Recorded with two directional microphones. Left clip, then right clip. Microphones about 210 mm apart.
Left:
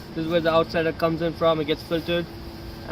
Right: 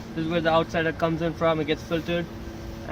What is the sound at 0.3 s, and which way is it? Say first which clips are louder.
Speech: left 2 dB; 10° right (ahead or behind).